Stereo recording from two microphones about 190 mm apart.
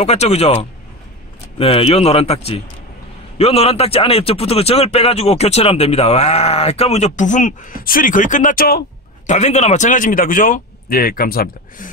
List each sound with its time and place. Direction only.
0.0 s speech: 35° left (ahead or behind); by 8.8 s 50° left (ahead or behind)
9.3 s speech: 35° left (ahead or behind)